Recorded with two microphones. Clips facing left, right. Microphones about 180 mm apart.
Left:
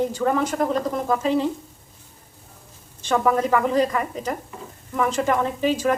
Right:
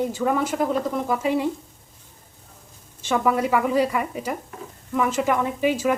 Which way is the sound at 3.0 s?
5° right (ahead or behind).